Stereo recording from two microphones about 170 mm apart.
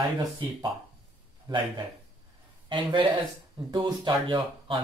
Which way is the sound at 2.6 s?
30° right (ahead or behind).